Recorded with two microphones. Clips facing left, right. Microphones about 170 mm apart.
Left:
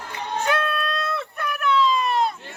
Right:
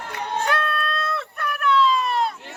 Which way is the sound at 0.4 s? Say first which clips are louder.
Left 2 dB; centre (ahead or behind).